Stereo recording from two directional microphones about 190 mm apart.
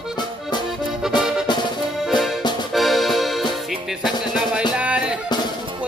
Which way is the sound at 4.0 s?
5° right (ahead or behind).